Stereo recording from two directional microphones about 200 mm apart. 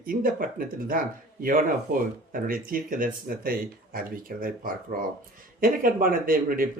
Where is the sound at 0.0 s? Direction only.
45° right (ahead or behind).